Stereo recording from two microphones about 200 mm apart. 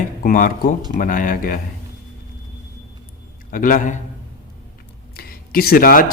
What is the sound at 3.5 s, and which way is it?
Speech, 45° left (ahead or behind).